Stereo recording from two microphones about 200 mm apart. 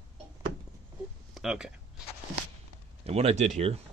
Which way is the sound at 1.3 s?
5° right (ahead or behind).